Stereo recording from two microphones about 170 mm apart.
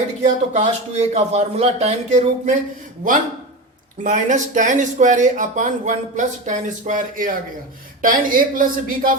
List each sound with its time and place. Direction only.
0.2 s speech: 40° right (ahead or behind)
4.0 s speech: 50° right (ahead or behind)